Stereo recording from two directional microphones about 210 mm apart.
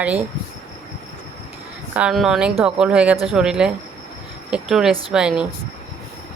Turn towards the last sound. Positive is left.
turn(degrees=-5)  # may be behind; listen again after turning